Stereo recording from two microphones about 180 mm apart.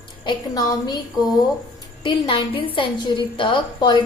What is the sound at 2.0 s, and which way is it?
A woman's voice, 30° left (ahead or behind).